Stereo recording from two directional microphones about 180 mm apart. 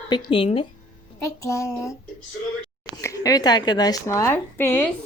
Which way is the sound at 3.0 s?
20° left (ahead or behind).